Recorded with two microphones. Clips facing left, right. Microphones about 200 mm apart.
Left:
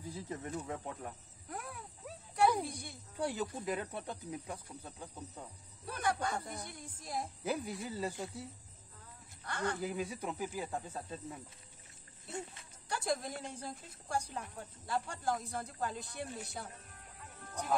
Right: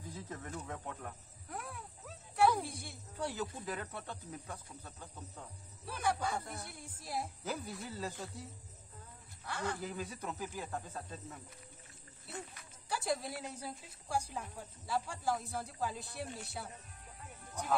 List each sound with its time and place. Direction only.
0.1 s speech: 10° left (ahead or behind)
1.5 s a sound: centre (ahead or behind)
2.6 s speech: centre (ahead or behind)
3.2 s speech: 15° left (ahead or behind)
5.9 s speech: 5° right (ahead or behind)
7.4 s speech: 10° left (ahead or behind)
9.4 s a man's voice: centre (ahead or behind)
9.8 s speech: 10° left (ahead or behind)
12.3 s speech: 25° left (ahead or behind)
12.8 s a woman's voice: 5° right (ahead or behind)